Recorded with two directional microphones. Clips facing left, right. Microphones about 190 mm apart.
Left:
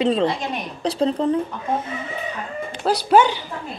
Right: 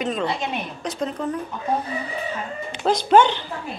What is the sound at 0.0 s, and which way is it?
Speech, 30° left (ahead or behind).